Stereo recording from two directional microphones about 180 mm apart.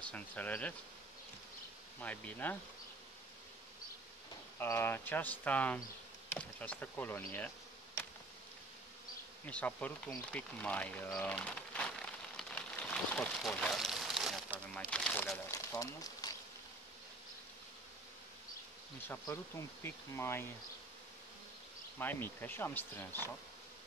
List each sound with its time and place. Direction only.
0.0 s speech: 10° left (ahead or behind)
2.0 s speech: 10° left (ahead or behind)
4.6 s speech: 15° left (ahead or behind)
9.5 s a sound: 5° left (ahead or behind)
14.8 s speech: 5° left (ahead or behind)
15.5 s a sound: 20° left (ahead or behind)
19.0 s speech: 15° left (ahead or behind)
21.9 s speech: 10° left (ahead or behind)